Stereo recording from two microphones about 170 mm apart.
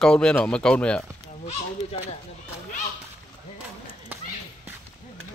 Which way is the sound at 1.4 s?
40° left (ahead or behind).